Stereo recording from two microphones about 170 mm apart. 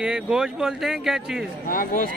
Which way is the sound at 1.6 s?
55° left (ahead or behind).